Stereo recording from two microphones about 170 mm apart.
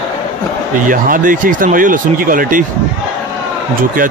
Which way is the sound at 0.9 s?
50° right (ahead or behind).